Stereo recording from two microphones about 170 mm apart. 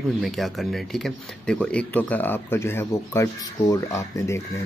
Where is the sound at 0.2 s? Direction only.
Centre (ahead or behind).